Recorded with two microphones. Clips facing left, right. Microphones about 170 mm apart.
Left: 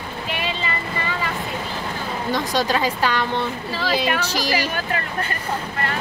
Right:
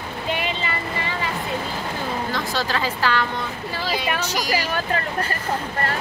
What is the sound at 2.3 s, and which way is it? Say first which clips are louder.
Speech: left 7 dB; 15° left (ahead or behind).